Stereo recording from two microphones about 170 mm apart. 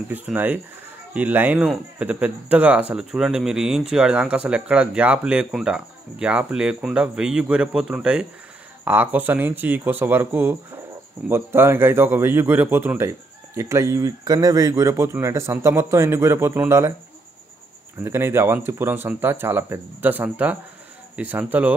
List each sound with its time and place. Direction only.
0.1 s speech: 10° right (ahead or behind)
18.0 s speech: 15° right (ahead or behind)